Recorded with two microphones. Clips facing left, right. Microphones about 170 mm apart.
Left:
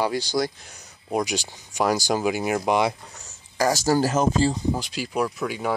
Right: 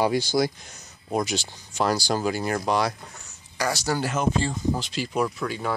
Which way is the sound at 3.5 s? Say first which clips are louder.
Left 5 dB; 45° left (ahead or behind).